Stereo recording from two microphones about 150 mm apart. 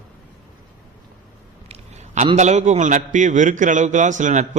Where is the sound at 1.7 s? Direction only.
50° right (ahead or behind).